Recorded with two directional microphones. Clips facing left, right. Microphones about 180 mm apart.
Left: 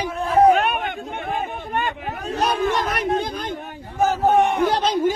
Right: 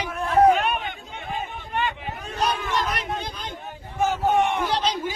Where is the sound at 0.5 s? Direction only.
55° left (ahead or behind).